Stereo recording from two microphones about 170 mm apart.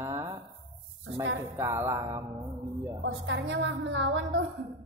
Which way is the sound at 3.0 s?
90° right.